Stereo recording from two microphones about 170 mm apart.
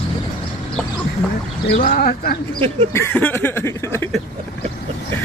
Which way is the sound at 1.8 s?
55° left (ahead or behind).